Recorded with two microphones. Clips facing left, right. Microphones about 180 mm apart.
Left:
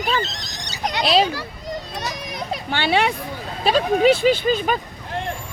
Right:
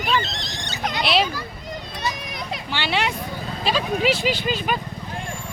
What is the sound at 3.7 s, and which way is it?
Speech, 50° left (ahead or behind).